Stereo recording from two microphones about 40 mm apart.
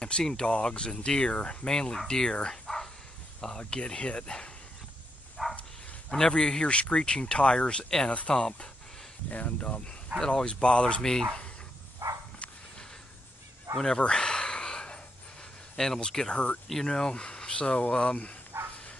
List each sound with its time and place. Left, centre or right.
0.2 s speech: centre
1.7 s speech: centre
5.4 s a sound: centre
6.0 s speech: centre
9.3 s speech: left
11.0 s speech: centre
13.7 s speech: centre
14.0 s a sound: centre
15.7 s speech: centre; by 18.3 s left
18.5 s dog: right